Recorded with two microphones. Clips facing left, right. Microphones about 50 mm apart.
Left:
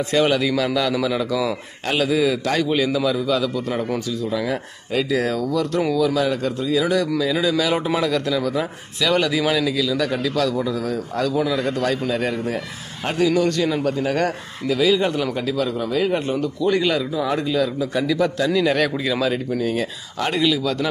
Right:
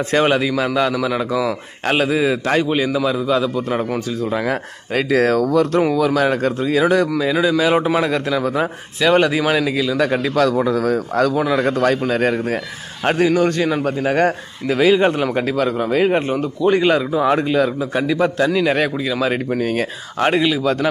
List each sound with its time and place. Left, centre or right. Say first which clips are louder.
0.1 s a man's voice: right 2 dB; right
4.2 s speech: right 3 dB; right
7.2 s a man's voice: right 3 dB; right
10.2 s a man's voice: right 5 dB; right
14.7 s a man's voice: right 4 dB; right
18.5 s a man's voice: right 2 dB; centre
19.6 s speech: right 3 dB; right
20.3 s a man's voice: right 3 dB; right